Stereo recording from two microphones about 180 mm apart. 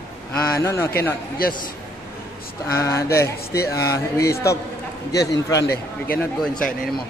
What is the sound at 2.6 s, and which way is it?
A man's voice, 15° left (ahead or behind).